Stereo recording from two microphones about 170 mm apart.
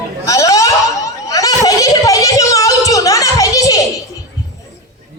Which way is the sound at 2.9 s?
20° left (ahead or behind).